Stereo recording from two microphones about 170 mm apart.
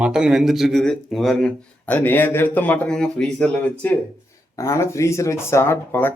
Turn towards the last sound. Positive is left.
turn(degrees=15)  # may be behind; listen again after turning